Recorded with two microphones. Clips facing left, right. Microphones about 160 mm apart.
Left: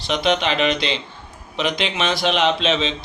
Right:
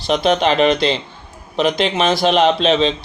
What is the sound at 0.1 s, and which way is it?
Speech, 40° right (ahead or behind).